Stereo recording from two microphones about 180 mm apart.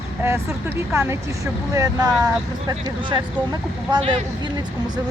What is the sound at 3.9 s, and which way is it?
Speech, 30° right (ahead or behind).